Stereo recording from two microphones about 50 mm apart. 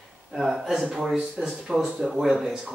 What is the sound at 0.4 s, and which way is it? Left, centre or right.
A man's voice, centre.